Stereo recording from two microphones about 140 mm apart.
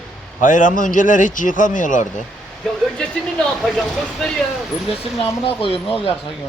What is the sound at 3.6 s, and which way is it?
Speech, centre (ahead or behind).